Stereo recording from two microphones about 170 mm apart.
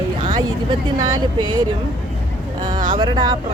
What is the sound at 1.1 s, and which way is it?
Speech, 25° right (ahead or behind).